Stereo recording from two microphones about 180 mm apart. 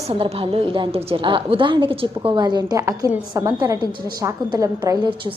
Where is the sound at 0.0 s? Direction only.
35° right (ahead or behind).